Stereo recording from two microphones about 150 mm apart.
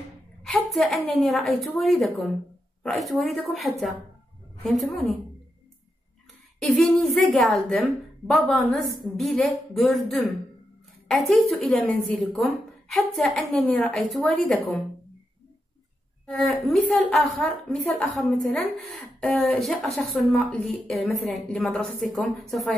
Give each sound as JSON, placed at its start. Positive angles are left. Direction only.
{"t": 0.4, "sound": "a woman's voice", "side_deg": 5}
{"t": 6.6, "sound": "a woman's voice", "side_deg": 0}
{"t": 16.6, "sound": "a woman's voice", "side_deg": 0}